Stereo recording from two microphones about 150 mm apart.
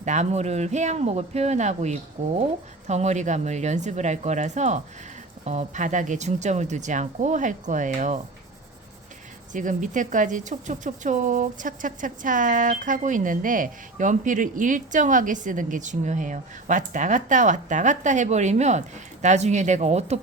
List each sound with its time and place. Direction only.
0.0 s speech: 50° right (ahead or behind)
9.5 s speech: 60° right (ahead or behind)